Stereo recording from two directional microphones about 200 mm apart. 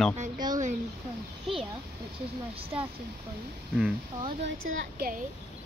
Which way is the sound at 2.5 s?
30° right (ahead or behind).